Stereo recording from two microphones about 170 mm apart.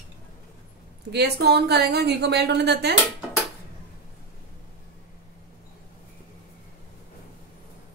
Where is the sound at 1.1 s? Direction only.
75° right (ahead or behind).